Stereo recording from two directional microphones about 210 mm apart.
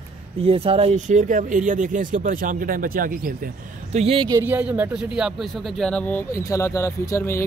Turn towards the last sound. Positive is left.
turn(degrees=15)  # may be behind; listen again after turning